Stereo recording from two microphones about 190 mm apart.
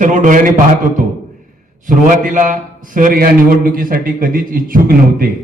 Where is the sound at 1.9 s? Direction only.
45° right (ahead or behind).